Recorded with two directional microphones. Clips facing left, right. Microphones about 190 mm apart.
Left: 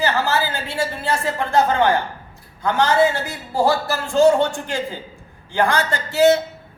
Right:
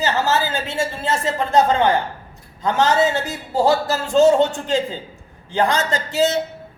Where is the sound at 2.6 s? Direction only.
20° right (ahead or behind).